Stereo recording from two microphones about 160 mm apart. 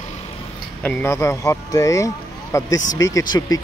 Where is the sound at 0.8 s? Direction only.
10° left (ahead or behind).